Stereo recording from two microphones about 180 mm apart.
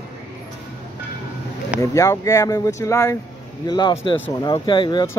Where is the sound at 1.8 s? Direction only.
15° left (ahead or behind).